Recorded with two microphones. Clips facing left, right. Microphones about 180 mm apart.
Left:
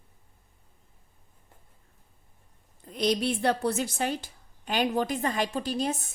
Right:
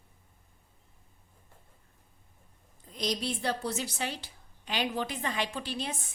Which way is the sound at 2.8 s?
60° left (ahead or behind).